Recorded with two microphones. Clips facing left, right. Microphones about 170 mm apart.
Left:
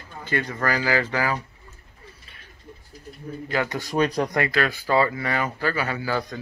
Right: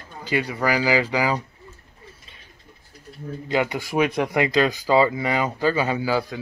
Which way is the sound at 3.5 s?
15° right (ahead or behind).